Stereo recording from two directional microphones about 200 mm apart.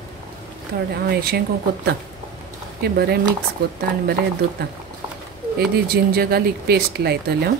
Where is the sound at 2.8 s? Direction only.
50° right (ahead or behind).